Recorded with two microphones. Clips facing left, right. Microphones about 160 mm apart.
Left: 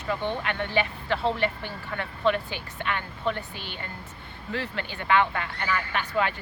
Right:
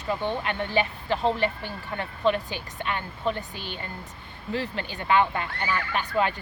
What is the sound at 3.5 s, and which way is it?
Speech, 15° left (ahead or behind).